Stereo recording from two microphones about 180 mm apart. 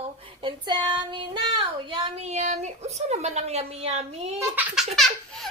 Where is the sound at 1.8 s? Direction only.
35° right (ahead or behind).